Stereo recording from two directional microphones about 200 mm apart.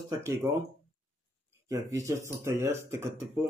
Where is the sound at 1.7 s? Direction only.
15° right (ahead or behind).